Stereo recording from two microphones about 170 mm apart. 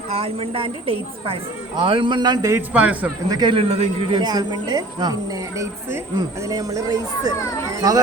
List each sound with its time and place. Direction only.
0.1 s a man's voice: 35° right (ahead or behind); by 3.1 s 10° right (ahead or behind)
3.2 s speech: 25° right (ahead or behind)
4.2 s speech: 25° right (ahead or behind)